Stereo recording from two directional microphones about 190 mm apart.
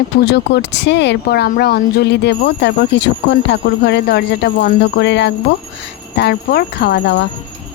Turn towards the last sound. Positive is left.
turn(degrees=60)  # may be behind; listen again after turning